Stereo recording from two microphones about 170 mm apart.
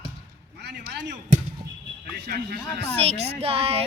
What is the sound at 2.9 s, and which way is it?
Speech, 35° right (ahead or behind).